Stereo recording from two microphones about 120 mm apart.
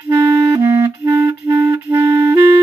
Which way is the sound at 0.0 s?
20° right (ahead or behind).